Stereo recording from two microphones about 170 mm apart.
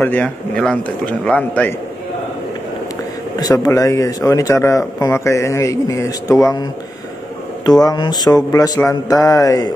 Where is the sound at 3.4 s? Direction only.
20° left (ahead or behind).